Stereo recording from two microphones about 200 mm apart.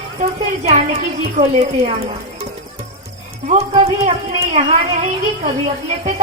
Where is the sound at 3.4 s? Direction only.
30° right (ahead or behind).